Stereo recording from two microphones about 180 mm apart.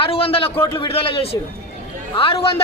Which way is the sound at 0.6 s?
30° left (ahead or behind).